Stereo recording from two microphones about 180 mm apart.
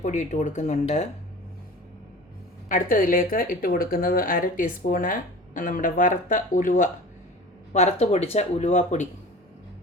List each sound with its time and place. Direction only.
0.0 s speech: 40° left (ahead or behind)
2.6 s speech: 50° left (ahead or behind)